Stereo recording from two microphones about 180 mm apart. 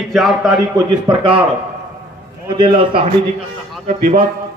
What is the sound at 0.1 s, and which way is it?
Speech, centre (ahead or behind).